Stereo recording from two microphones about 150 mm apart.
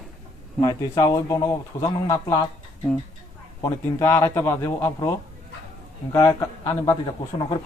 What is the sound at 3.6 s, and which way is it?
A man's voice, 20° left (ahead or behind).